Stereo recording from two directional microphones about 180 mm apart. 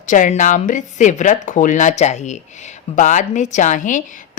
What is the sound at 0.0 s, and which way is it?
Speech, 45° left (ahead or behind).